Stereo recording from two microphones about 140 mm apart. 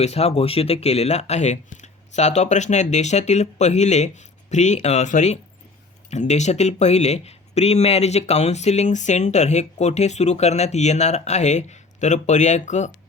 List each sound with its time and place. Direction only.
0.0 s speech: 50° left (ahead or behind)